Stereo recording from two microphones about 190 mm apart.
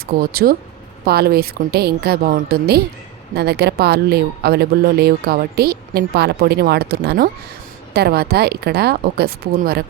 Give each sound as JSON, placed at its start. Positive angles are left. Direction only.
{"t": 0.1, "sound": "speech", "side_deg": -50}